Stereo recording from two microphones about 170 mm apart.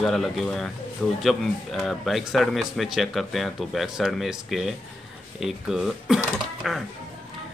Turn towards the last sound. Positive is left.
turn(degrees=0)  # may be behind; listen again after turning